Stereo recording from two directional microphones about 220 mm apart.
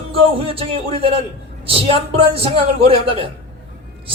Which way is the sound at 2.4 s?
25° right (ahead or behind).